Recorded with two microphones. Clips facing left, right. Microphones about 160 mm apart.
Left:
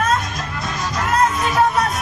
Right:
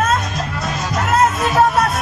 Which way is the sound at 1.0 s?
45° right (ahead or behind).